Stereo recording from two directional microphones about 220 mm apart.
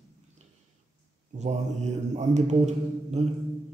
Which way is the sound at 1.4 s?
30° right (ahead or behind).